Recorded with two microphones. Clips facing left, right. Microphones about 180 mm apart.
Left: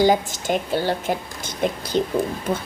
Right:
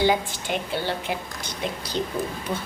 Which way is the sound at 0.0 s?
40° left (ahead or behind).